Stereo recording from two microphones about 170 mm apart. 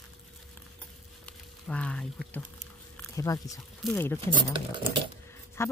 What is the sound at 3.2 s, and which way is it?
Speech, 20° left (ahead or behind).